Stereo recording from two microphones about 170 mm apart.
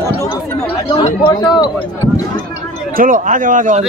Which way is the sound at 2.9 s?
50° right (ahead or behind).